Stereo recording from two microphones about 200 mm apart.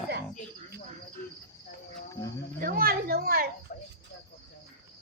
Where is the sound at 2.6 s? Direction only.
45° right (ahead or behind).